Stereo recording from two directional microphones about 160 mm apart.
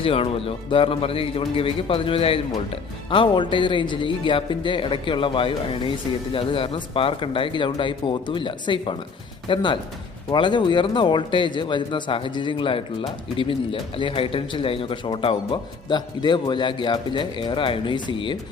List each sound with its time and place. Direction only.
0.0 s speech: 35° left (ahead or behind)